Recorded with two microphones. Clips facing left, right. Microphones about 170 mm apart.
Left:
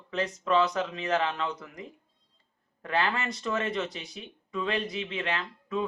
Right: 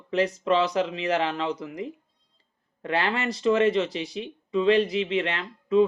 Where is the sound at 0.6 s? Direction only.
30° right (ahead or behind).